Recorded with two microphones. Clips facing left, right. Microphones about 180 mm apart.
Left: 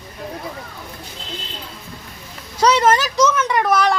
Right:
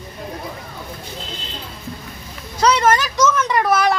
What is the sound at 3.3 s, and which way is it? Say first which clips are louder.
Speech: even; 5° left (ahead or behind).